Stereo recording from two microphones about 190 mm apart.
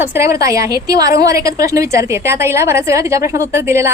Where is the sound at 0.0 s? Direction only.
15° right (ahead or behind).